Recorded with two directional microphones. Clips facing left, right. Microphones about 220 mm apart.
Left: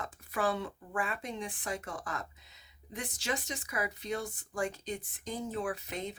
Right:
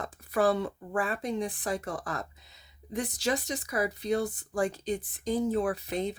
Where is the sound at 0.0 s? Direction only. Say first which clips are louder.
Right 7 dB; 40° right (ahead or behind).